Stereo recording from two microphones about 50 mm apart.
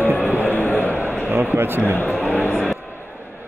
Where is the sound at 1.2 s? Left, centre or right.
Right.